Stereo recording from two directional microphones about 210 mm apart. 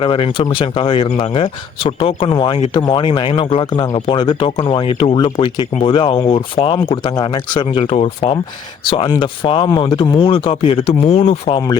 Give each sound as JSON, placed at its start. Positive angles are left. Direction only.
{"t": 0.0, "sound": "speech", "side_deg": 25}